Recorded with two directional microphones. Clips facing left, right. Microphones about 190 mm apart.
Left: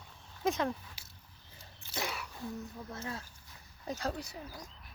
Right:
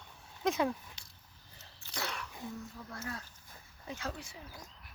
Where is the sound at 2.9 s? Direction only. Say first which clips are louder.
Even; 25° left (ahead or behind).